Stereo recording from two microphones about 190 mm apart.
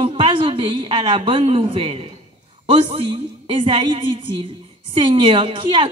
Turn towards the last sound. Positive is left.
turn(degrees=-25)  # may be behind; listen again after turning